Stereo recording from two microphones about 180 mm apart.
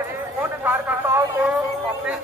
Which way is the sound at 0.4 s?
10° right (ahead or behind).